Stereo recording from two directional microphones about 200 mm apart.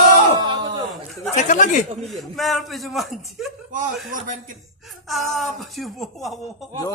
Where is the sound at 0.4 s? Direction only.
25° right (ahead or behind).